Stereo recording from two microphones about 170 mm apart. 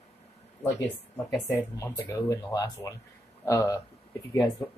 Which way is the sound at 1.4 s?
20° left (ahead or behind).